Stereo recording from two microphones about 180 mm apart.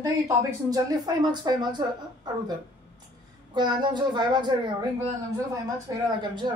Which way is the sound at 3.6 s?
25° right (ahead or behind).